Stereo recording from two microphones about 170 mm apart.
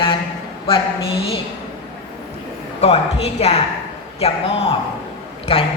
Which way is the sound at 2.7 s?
40° left (ahead or behind).